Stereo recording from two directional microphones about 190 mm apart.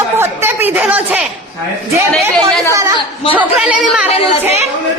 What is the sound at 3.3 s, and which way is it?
Speech, 5° right (ahead or behind).